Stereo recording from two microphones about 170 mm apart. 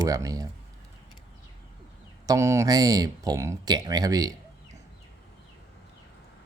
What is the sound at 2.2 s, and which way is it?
Speech, 15° right (ahead or behind).